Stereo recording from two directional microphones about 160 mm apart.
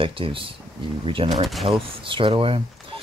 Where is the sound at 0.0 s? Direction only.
35° right (ahead or behind).